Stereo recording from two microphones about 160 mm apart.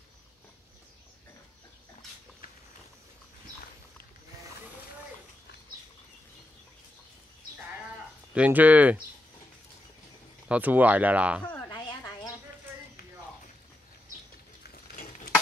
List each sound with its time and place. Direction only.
8.4 s speech: 10° right (ahead or behind)
10.5 s speech: 10° right (ahead or behind)
14.7 s a sound: 65° left (ahead or behind)